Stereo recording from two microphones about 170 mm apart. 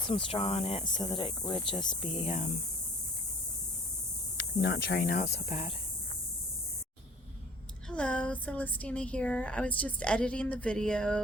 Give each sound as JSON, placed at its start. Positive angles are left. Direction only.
{"t": 0.1, "sound": "speech", "side_deg": 30}
{"t": 0.9, "sound": "speech", "side_deg": 25}
{"t": 4.6, "sound": "speech", "side_deg": 75}
{"t": 5.3, "sound": "speech", "side_deg": 40}
{"t": 7.9, "sound": "a woman's voice", "side_deg": 5}